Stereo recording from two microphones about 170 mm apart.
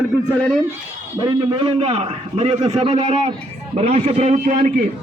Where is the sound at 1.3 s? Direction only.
30° right (ahead or behind).